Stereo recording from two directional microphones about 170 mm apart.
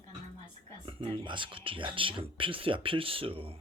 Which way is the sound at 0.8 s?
30° right (ahead or behind).